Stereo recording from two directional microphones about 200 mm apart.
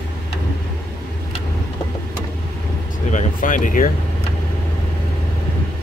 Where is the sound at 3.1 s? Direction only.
40° left (ahead or behind).